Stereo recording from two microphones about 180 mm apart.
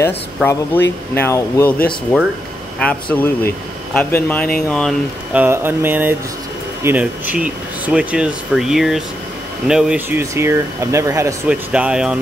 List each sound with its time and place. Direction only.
0.0 s speech: 15° left (ahead or behind)
2.8 s speech: 5° left (ahead or behind)
5.3 s speech: 10° right (ahead or behind)
11.4 s speech: 5° right (ahead or behind)